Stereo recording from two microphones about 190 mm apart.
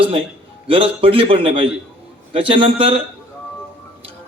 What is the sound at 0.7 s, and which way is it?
A man's voice, 30° right (ahead or behind).